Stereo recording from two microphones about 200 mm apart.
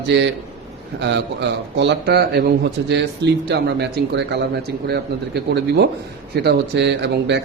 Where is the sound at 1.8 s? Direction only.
60° right (ahead or behind).